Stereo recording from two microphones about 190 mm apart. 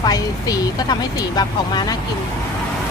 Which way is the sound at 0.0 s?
20° left (ahead or behind).